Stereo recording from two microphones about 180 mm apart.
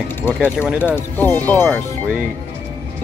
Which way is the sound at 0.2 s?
10° left (ahead or behind).